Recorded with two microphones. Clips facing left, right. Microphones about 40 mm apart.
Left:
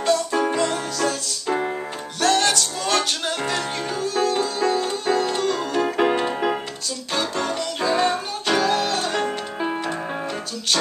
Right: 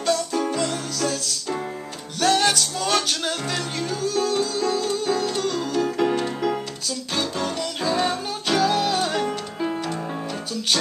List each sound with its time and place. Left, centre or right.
0.3 s music: left
0.6 s music: centre
2.1 s music: centre
5.9 s music: left
7.2 s music: centre
9.2 s music: left